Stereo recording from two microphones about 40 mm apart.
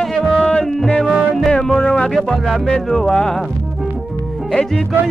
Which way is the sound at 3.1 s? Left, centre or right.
Left.